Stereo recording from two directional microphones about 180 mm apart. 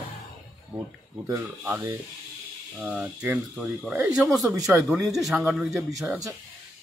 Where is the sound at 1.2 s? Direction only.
20° right (ahead or behind).